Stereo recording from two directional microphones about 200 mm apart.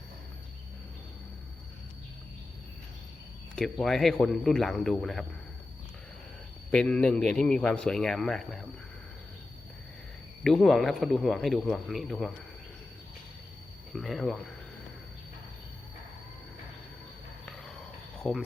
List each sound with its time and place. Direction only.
3.5 s a man's voice: 5° left (ahead or behind)
6.7 s a man's voice: 5° left (ahead or behind)
10.4 s a man's voice: centre (ahead or behind)
13.9 s a man's voice: centre (ahead or behind)
18.2 s speech: centre (ahead or behind)